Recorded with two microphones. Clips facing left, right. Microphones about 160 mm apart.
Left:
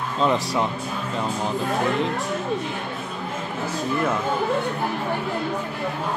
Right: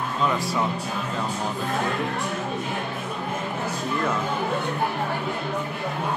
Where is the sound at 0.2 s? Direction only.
25° left (ahead or behind).